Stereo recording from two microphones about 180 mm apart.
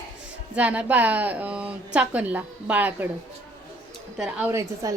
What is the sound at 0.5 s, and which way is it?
A woman's voice, 5° right (ahead or behind).